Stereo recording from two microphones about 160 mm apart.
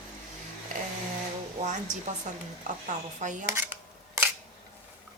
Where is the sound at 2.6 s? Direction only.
50° right (ahead or behind).